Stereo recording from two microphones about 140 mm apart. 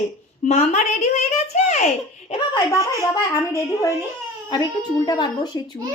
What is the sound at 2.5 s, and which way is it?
Speech, 25° left (ahead or behind).